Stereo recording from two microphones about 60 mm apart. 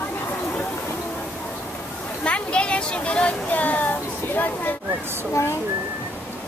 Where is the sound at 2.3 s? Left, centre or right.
Centre.